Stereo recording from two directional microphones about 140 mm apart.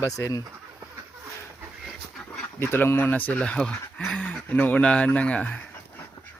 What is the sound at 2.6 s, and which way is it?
Speech, 15° left (ahead or behind).